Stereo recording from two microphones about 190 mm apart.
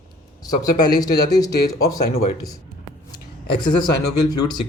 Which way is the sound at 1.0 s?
20° left (ahead or behind).